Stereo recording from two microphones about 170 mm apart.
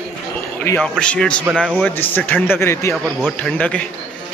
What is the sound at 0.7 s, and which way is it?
A man's voice, 5° left (ahead or behind).